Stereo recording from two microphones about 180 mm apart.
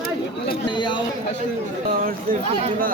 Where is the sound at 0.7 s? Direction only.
25° left (ahead or behind).